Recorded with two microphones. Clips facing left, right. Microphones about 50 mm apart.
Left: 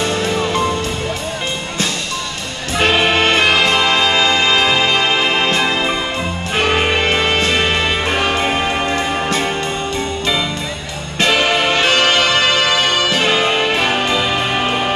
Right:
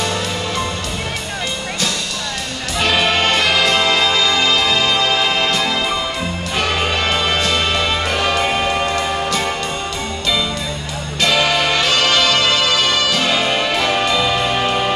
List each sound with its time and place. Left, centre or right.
2.7 s music: left
11.1 s music: left